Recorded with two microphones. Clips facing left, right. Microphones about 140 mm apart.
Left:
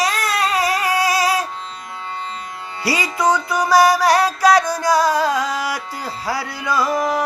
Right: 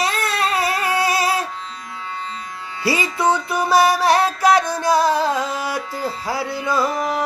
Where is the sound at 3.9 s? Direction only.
25° right (ahead or behind).